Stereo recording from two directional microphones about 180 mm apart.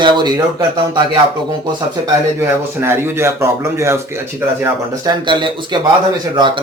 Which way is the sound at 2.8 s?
15° right (ahead or behind).